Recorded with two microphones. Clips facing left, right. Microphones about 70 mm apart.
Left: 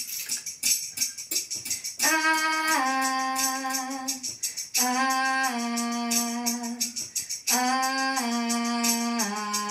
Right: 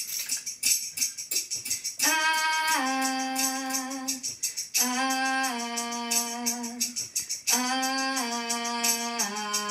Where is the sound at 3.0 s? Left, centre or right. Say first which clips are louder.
Left 3 dB; left.